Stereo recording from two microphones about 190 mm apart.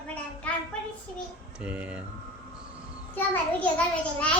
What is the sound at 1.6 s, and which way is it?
Speech, 5° right (ahead or behind).